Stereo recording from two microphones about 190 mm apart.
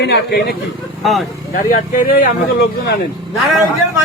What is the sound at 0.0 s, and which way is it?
Speech, 60° left (ahead or behind).